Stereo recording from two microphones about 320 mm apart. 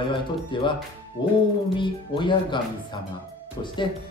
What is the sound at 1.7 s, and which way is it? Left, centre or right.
Speech, centre.